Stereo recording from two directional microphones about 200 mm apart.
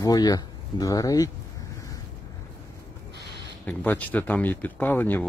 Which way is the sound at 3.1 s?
60° right (ahead or behind).